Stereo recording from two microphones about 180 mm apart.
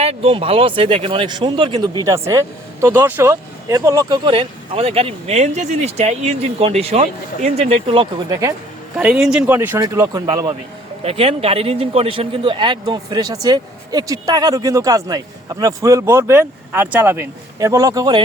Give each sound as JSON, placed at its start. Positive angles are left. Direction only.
{"t": 0.0, "sound": "speech", "side_deg": -35}
{"t": 8.3, "sound": "speech", "side_deg": -15}
{"t": 9.0, "sound": "a man's voice", "side_deg": -5}